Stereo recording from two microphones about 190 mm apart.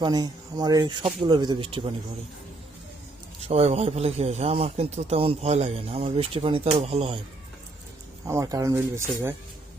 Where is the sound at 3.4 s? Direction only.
30° right (ahead or behind).